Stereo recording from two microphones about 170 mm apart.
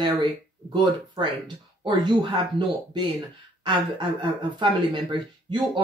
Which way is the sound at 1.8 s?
25° right (ahead or behind).